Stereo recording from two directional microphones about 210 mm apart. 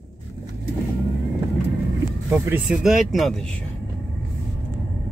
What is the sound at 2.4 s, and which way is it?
Speech, 5° right (ahead or behind).